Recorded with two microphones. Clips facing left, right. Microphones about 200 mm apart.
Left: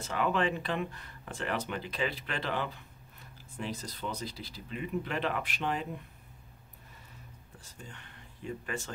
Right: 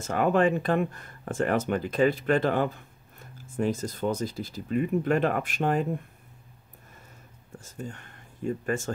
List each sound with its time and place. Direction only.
0.0 s speech: 45° right (ahead or behind)
7.5 s speech: 45° right (ahead or behind)